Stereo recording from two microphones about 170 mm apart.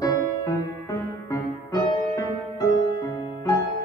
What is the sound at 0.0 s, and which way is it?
Music, 20° left (ahead or behind).